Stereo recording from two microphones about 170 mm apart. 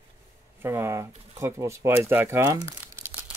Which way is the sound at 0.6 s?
15° right (ahead or behind).